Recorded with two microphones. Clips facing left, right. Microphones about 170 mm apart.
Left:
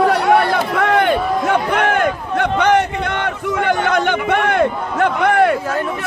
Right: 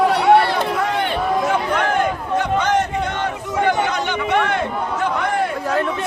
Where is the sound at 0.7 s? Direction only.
65° left (ahead or behind).